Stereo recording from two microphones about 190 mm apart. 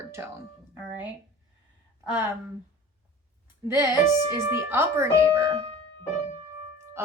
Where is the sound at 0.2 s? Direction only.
15° right (ahead or behind).